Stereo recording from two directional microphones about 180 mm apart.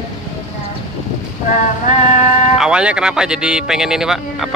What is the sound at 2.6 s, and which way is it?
Speech, 5° right (ahead or behind).